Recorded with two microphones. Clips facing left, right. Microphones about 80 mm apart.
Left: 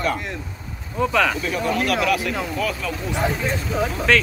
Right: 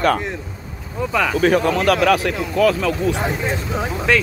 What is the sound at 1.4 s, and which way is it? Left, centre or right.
Speech, right.